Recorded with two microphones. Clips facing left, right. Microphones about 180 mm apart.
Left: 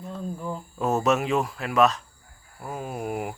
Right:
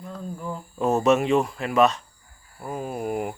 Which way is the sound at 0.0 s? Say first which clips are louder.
Left 1 dB; centre (ahead or behind).